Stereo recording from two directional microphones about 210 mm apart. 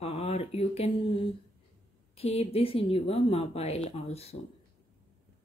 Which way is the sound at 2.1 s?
30° left (ahead or behind).